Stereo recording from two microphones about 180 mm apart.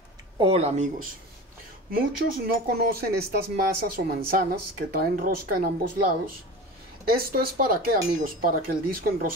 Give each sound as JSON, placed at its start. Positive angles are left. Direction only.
{"t": 0.4, "sound": "speech", "side_deg": -35}
{"t": 1.9, "sound": "speech", "side_deg": -55}